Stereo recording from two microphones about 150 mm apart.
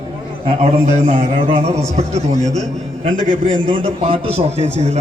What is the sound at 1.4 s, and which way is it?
A man's voice, 45° right (ahead or behind).